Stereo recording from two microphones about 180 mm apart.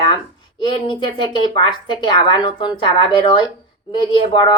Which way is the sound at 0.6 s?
25° left (ahead or behind).